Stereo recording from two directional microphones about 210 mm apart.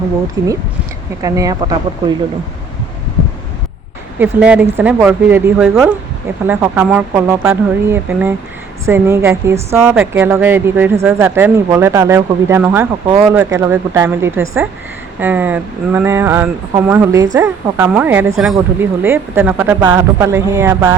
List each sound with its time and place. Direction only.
0.4 s speech: 20° right (ahead or behind)
4.2 s speech: 5° right (ahead or behind)